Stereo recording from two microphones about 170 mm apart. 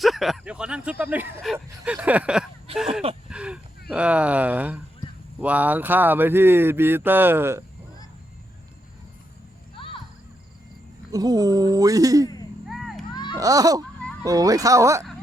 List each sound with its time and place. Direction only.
0.0 s speech: centre (ahead or behind)
1.5 s a sound: 5° right (ahead or behind)
5.4 s speech: 10° right (ahead or behind)
9.7 s music: 30° left (ahead or behind)
11.1 s speech: 20° right (ahead or behind)
12.6 s a sound: centre (ahead or behind)
13.3 s speech: 20° right (ahead or behind)